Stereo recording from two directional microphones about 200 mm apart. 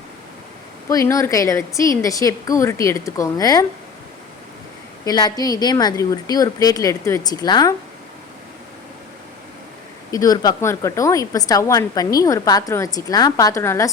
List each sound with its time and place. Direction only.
0.9 s a woman's voice: 15° left (ahead or behind)
5.0 s a woman's voice: 20° left (ahead or behind)
10.1 s a woman's voice: 20° left (ahead or behind)